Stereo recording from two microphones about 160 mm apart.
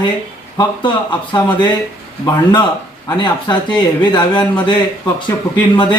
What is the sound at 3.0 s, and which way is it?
Speech, 25° left (ahead or behind).